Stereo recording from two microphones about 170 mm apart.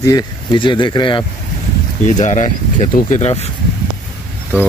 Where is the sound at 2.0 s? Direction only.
45° left (ahead or behind).